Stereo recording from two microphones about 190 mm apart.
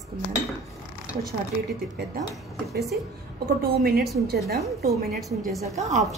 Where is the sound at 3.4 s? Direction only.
50° right (ahead or behind).